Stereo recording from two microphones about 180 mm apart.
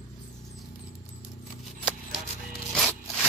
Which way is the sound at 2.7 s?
Centre (ahead or behind).